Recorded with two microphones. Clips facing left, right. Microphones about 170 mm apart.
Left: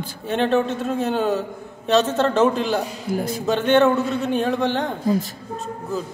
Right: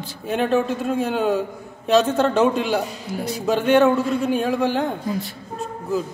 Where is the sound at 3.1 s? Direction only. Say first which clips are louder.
Left 9 dB; 55° left (ahead or behind).